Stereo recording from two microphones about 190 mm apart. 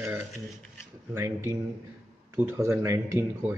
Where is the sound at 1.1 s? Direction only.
15° right (ahead or behind).